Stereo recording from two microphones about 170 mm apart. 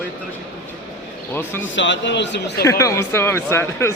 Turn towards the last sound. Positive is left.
turn(degrees=15)  # may be behind; listen again after turning